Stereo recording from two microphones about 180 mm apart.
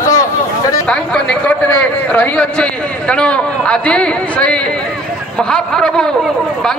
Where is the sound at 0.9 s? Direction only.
5° left (ahead or behind).